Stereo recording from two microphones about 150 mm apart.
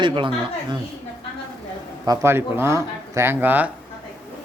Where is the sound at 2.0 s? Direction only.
20° right (ahead or behind).